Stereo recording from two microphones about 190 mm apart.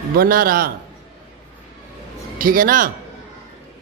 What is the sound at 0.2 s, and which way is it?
Speech, 50° right (ahead or behind).